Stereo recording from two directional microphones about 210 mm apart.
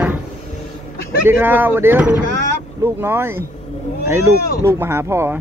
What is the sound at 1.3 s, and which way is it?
Speech, 10° right (ahead or behind).